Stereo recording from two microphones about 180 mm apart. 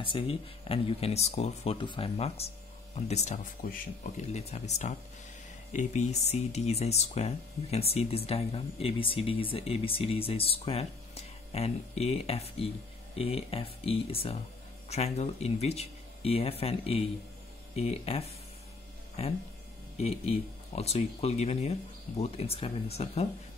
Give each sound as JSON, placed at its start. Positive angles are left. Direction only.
{"t": 0.0, "sound": "speech", "side_deg": 30}